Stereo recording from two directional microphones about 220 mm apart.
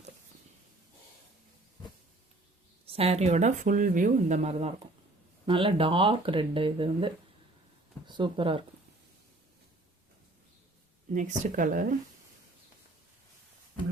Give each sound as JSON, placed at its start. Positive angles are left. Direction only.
{"t": 2.8, "sound": "speech", "side_deg": -25}
{"t": 11.1, "sound": "speech", "side_deg": -35}